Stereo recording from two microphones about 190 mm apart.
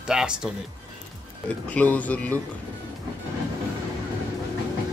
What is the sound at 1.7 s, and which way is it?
Speech, 5° left (ahead or behind).